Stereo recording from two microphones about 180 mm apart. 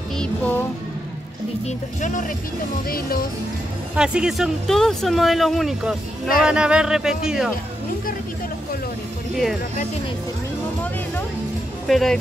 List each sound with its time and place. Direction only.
0.2 s music: 10° left (ahead or behind)
1.7 s speech: 45° left (ahead or behind)
3.9 s speech: 5° right (ahead or behind)
11.9 s speech: centre (ahead or behind)